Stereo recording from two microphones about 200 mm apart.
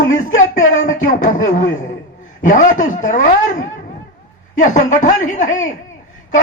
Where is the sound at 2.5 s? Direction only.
40° left (ahead or behind).